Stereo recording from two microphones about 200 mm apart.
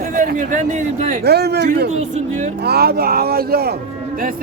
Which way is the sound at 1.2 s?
55° right (ahead or behind).